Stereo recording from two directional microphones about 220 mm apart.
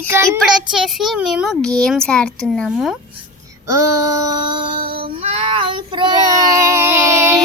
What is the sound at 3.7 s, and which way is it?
Female singing, 15° right (ahead or behind).